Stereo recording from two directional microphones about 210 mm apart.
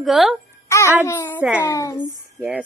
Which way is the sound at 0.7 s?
15° left (ahead or behind).